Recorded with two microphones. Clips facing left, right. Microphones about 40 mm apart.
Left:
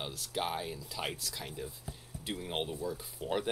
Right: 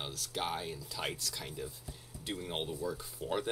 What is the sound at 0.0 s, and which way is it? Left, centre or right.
Speech, centre.